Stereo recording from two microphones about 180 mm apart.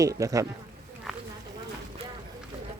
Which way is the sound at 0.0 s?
20° right (ahead or behind).